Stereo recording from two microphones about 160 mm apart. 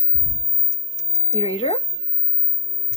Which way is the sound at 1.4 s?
40° left (ahead or behind).